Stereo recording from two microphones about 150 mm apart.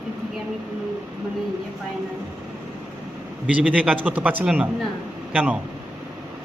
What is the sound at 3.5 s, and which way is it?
Speech, 10° right (ahead or behind).